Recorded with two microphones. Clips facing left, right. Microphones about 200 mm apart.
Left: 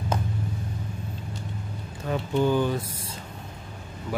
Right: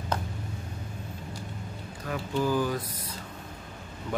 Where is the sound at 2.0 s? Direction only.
25° left (ahead or behind).